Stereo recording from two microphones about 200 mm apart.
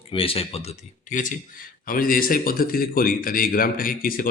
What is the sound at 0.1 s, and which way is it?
Speech, 25° left (ahead or behind).